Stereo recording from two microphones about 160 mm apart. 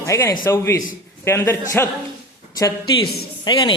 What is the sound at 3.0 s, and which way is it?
Speech, 80° left.